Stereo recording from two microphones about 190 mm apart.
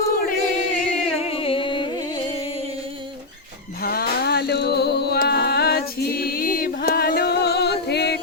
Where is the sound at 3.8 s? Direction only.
55° left (ahead or behind).